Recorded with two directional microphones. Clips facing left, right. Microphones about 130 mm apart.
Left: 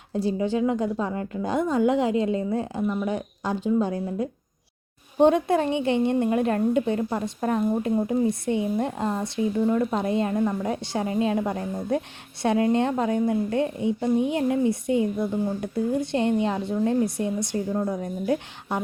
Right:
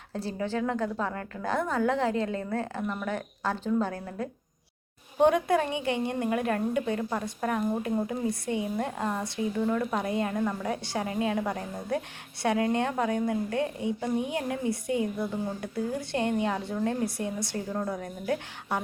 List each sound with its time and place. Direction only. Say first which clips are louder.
0.1 s a woman's voice: left 7 dB; 15° left (ahead or behind)